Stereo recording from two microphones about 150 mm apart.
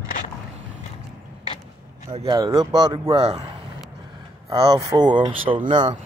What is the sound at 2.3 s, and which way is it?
Speech, 25° right (ahead or behind).